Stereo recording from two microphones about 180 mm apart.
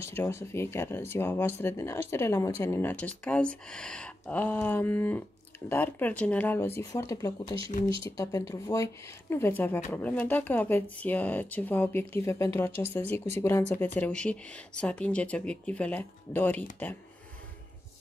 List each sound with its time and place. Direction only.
0.0 s speech: 15° left (ahead or behind)